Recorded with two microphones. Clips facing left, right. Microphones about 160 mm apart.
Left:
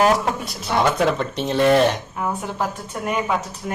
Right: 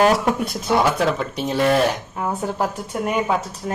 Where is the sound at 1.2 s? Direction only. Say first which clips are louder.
Left 1 dB; 5° right (ahead or behind).